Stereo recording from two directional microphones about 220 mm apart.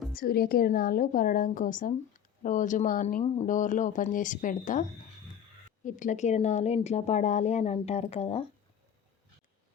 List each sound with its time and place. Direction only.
0.1 s speech: 45° left (ahead or behind); by 8.4 s 25° left (ahead or behind)